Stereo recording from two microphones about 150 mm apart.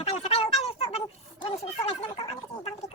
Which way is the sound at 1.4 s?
40° left (ahead or behind).